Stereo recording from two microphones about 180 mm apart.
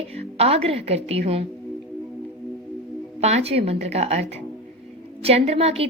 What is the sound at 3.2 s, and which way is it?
A woman's voice, 35° right (ahead or behind).